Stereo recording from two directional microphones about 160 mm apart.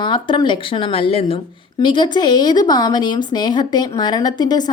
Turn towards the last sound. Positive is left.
turn(degrees=25)  # may be behind; listen again after turning